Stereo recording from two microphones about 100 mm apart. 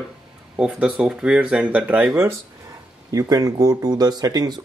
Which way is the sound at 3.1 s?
40° right (ahead or behind).